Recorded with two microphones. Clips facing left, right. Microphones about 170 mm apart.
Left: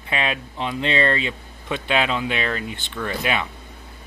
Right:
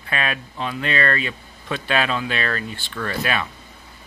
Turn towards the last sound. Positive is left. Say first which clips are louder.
# even
turn(degrees=15)  # may be behind; listen again after turning